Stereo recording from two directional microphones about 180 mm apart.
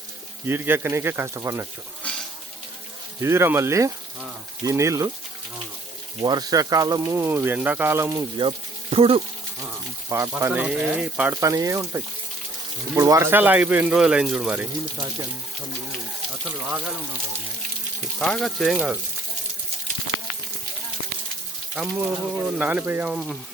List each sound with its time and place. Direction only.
0.4 s speech: 10° right (ahead or behind)
3.2 s speech: 15° right (ahead or behind)
6.2 s speech: 20° right (ahead or behind)
8.4 s speech: 30° right (ahead or behind)
10.1 s speech: 15° right (ahead or behind)
18.2 s speech: centre (ahead or behind)
21.8 s speech: 10° right (ahead or behind)